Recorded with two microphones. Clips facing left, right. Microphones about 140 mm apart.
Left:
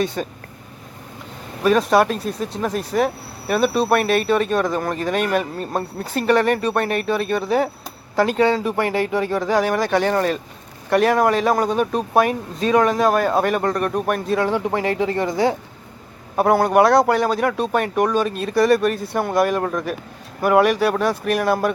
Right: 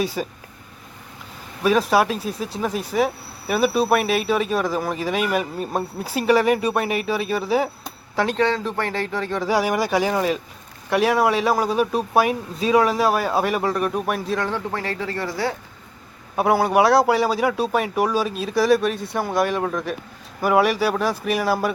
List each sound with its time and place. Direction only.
0.0 s speech: 5° right (ahead or behind)
1.6 s speech: centre (ahead or behind)
9.4 s speech: 10° right (ahead or behind)
14.4 s speech: 15° left (ahead or behind)
16.3 s speech: centre (ahead or behind)